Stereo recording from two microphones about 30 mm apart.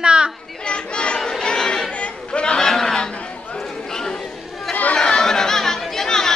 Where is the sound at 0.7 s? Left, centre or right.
Left.